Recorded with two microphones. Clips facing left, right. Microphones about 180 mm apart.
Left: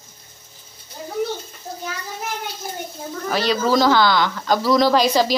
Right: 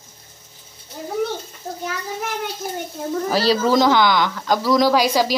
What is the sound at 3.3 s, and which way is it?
Speech, 35° right (ahead or behind).